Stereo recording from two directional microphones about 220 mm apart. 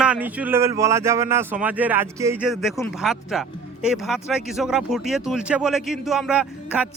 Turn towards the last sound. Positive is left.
turn(degrees=-5)  # may be behind; listen again after turning